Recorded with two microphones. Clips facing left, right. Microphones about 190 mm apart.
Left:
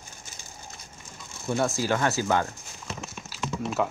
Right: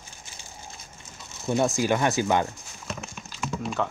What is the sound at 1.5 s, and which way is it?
Speech, 15° right (ahead or behind).